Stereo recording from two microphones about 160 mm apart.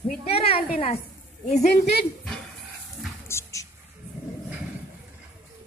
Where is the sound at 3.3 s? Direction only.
20° left (ahead or behind).